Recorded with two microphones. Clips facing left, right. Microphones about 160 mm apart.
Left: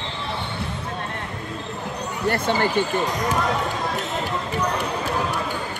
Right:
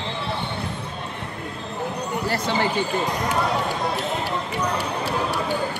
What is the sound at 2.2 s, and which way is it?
Basketball bounce, 55° left (ahead or behind).